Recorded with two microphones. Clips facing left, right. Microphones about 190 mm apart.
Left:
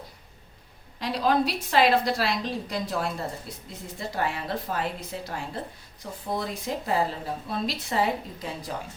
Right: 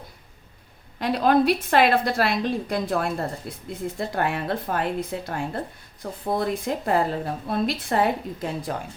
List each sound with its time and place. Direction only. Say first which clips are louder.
0.9 s a woman's voice: right 5 dB; 55° right (ahead or behind)